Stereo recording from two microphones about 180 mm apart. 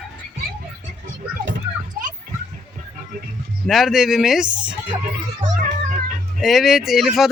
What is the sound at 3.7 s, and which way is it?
Speech, centre (ahead or behind).